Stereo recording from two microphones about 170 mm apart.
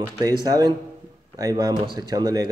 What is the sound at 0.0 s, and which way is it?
Speech, 25° right (ahead or behind).